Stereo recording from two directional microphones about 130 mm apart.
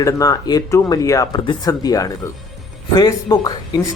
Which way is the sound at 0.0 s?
25° left (ahead or behind).